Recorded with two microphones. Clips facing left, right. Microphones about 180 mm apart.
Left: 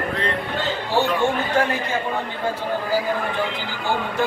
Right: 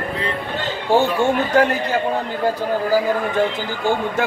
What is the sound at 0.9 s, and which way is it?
Speech, 50° right (ahead or behind).